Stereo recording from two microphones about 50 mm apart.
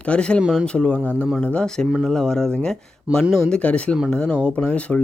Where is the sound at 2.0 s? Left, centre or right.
Centre.